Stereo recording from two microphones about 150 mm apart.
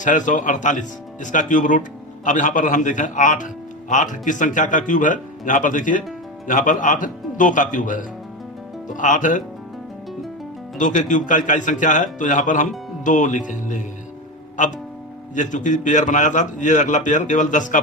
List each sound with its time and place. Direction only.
0.0 s speech: 55° left (ahead or behind)
10.8 s speech: 55° left (ahead or behind)